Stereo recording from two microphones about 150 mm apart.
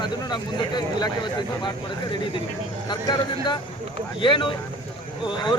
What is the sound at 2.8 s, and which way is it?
Speech, 30° left (ahead or behind).